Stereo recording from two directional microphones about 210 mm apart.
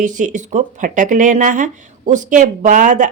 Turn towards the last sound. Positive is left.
turn(degrees=-35)  # may be behind; listen again after turning